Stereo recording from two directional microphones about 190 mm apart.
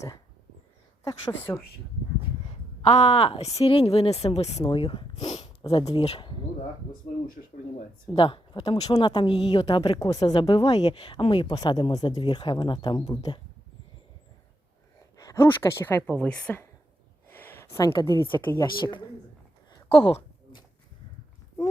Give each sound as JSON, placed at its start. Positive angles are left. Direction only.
{"t": 1.0, "sound": "a woman's voice", "side_deg": 10}
{"t": 2.8, "sound": "a woman's voice", "side_deg": 35}
{"t": 8.1, "sound": "speech", "side_deg": 30}
{"t": 10.7, "sound": "speech", "side_deg": 35}
{"t": 15.1, "sound": "a woman's voice", "side_deg": 15}
{"t": 17.2, "sound": "a sound", "side_deg": 10}
{"t": 18.1, "sound": "a woman's voice", "side_deg": 10}
{"t": 18.6, "sound": "speech", "side_deg": 25}
{"t": 19.7, "sound": "a sound", "side_deg": 25}